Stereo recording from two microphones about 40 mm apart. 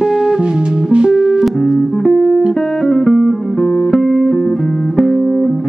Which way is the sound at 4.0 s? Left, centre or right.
Centre.